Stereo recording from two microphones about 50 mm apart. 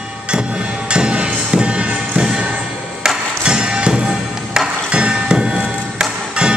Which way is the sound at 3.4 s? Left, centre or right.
Centre.